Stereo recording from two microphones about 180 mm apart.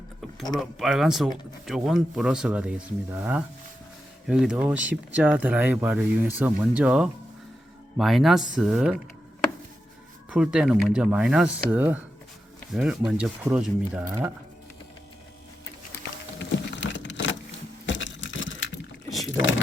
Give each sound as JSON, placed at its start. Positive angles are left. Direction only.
{"t": 0.5, "sound": "speech", "side_deg": 0}
{"t": 10.2, "sound": "speech", "side_deg": -5}
{"t": 16.4, "sound": "a sound", "side_deg": 85}